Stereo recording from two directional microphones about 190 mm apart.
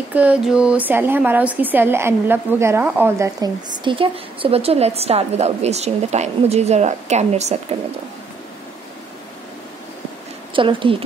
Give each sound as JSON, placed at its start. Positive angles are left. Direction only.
{"t": 0.1, "sound": "speech", "side_deg": -5}
{"t": 10.5, "sound": "a woman's voice", "side_deg": -25}